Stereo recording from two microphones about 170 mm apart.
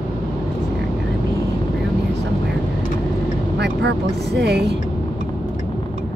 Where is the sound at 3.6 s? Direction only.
85° right.